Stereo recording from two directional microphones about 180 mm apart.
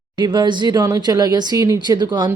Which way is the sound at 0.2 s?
25° right (ahead or behind).